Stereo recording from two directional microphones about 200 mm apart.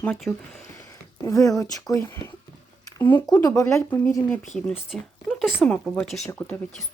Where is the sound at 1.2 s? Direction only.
15° left (ahead or behind).